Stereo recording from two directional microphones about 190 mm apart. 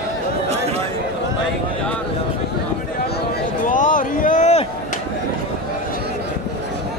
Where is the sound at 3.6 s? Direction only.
45° left (ahead or behind).